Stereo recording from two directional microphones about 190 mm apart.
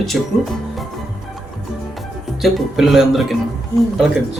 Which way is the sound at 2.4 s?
Centre (ahead or behind).